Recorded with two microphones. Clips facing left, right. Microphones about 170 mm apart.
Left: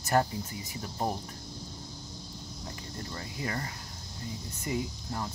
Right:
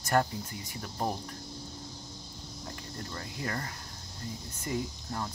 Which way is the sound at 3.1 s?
20° left (ahead or behind).